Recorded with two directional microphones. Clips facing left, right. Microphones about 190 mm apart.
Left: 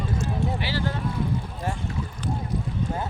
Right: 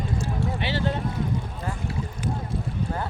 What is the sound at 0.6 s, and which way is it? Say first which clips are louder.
Speech: right 2 dB; 25° right (ahead or behind).